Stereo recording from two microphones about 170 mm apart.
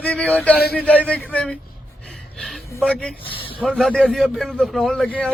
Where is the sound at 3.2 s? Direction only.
30° left (ahead or behind).